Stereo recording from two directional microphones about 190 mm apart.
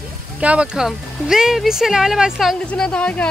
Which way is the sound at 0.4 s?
5° right (ahead or behind).